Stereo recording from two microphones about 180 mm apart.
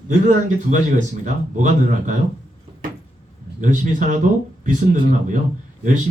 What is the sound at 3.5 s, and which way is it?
Speech, 45° right (ahead or behind).